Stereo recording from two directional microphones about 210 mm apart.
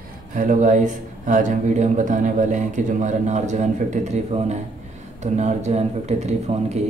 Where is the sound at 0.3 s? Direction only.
40° right (ahead or behind).